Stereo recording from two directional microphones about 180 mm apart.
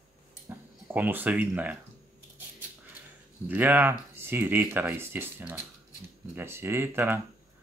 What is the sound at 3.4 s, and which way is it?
Speech, 10° right (ahead or behind).